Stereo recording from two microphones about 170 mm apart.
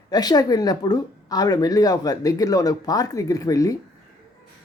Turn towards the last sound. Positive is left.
turn(degrees=20)  # may be behind; listen again after turning